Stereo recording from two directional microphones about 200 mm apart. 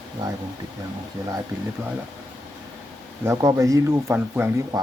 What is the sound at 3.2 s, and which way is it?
Speech, 15° right (ahead or behind).